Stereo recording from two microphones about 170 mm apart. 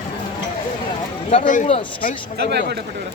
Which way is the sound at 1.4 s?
50° left (ahead or behind).